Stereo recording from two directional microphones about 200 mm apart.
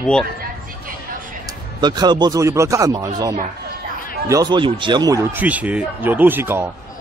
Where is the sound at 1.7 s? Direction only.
20° right (ahead or behind).